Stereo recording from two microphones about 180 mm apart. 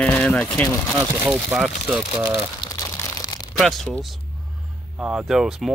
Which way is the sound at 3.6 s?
Centre (ahead or behind).